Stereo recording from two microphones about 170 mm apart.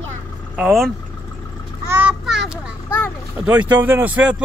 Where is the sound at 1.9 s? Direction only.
10° right (ahead or behind).